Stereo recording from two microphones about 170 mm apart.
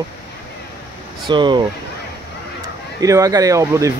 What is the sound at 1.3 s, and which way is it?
Speech, 25° right (ahead or behind).